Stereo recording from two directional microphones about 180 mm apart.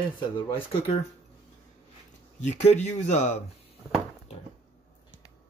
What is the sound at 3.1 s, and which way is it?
Speech, 40° left (ahead or behind).